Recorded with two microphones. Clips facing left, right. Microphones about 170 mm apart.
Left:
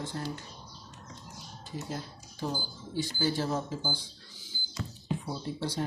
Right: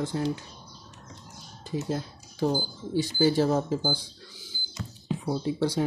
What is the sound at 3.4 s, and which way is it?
Speech, 45° right (ahead or behind).